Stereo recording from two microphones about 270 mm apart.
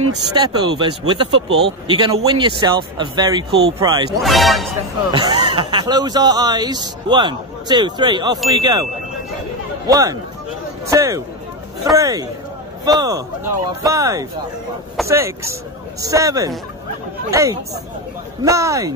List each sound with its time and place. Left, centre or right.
0.3 s speech: centre
4.2 s speech: centre
5.1 s speech: centre
9.8 s speech: centre